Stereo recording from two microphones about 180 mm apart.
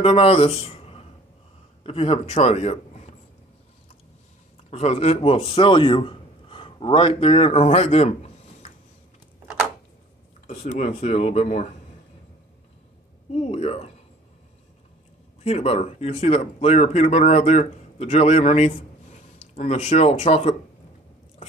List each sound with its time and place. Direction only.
0.0 s a man's voice: 35° left (ahead or behind)
4.6 s a man's voice: 35° left (ahead or behind)
10.4 s speech: 35° left (ahead or behind)
13.3 s speech: 35° left (ahead or behind)
15.4 s speech: 35° left (ahead or behind)